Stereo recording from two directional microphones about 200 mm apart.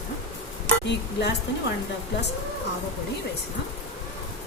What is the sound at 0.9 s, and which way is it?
Speech, 55° left (ahead or behind).